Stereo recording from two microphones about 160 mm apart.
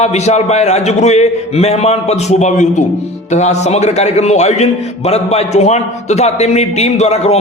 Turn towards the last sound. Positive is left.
turn(degrees=40)  # may be behind; listen again after turning